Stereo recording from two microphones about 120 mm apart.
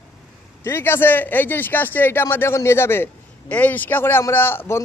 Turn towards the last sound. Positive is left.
turn(degrees=20)  # may be behind; listen again after turning